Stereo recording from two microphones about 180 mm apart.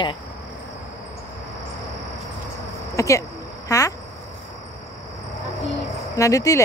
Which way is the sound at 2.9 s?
15° left (ahead or behind).